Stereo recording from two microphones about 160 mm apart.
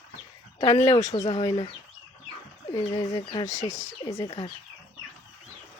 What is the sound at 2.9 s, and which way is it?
Speech, 20° left (ahead or behind).